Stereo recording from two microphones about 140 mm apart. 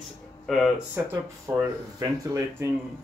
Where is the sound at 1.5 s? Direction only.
20° right (ahead or behind).